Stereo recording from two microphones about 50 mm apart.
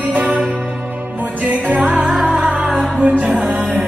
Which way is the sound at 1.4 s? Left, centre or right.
Right.